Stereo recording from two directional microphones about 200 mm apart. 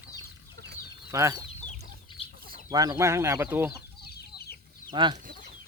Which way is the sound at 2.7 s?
20° right (ahead or behind).